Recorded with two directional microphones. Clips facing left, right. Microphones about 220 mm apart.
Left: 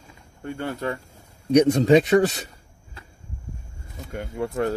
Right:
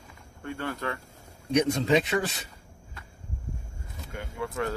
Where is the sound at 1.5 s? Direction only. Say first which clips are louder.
Left 8 dB; 40° left (ahead or behind).